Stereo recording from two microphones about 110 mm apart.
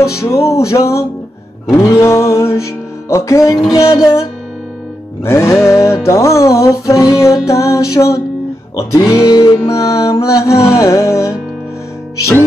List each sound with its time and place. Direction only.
0.0 s music: 25° left (ahead or behind)